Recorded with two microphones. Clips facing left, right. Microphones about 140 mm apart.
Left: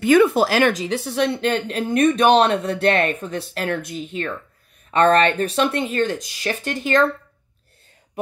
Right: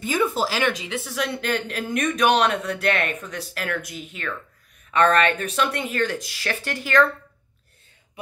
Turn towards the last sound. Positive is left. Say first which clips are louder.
# left 2 dB
turn(degrees=25)  # may be behind; listen again after turning